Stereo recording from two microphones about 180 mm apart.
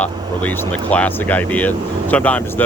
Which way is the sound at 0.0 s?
10° left (ahead or behind).